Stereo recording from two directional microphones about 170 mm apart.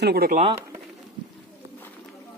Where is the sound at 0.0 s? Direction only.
65° right (ahead or behind).